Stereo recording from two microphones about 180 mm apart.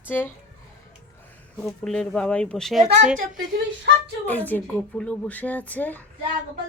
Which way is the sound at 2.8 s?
40° right (ahead or behind).